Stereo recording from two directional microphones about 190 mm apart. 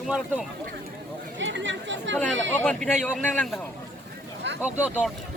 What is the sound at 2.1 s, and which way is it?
A man's voice, 5° left (ahead or behind).